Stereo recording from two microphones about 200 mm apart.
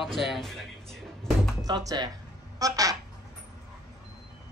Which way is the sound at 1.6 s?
20° right (ahead or behind).